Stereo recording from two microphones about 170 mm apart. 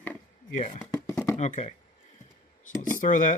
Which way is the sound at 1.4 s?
45° left (ahead or behind).